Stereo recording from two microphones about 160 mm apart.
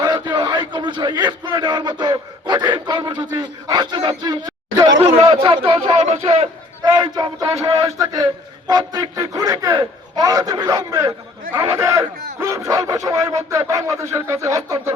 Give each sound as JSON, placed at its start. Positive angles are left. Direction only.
{"t": 0.0, "sound": "a man's voice", "side_deg": -25}
{"t": 6.8, "sound": "speech", "side_deg": -25}